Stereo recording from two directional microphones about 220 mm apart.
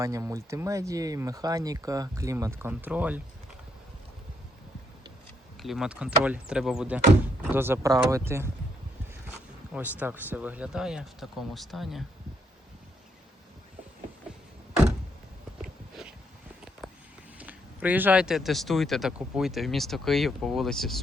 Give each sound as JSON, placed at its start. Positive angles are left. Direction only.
{"t": 0.0, "sound": "speech", "side_deg": -15}
{"t": 5.6, "sound": "speech", "side_deg": 0}
{"t": 9.7, "sound": "speech", "side_deg": -5}
{"t": 17.3, "sound": "speech", "side_deg": -5}